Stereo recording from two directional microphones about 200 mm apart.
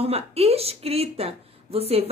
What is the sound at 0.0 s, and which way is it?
Speech, 30° right (ahead or behind).